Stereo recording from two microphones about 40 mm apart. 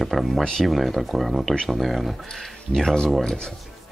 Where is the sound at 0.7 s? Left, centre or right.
Centre.